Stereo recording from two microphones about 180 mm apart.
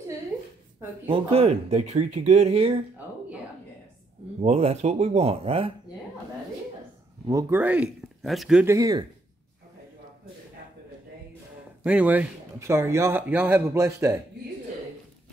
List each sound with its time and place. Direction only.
1.0 s speech: 30° right (ahead or behind)
4.4 s speech: 35° right (ahead or behind)
7.2 s speech: 15° right (ahead or behind)
8.6 s speech: 20° right (ahead or behind)
11.8 s speech: 5° right (ahead or behind)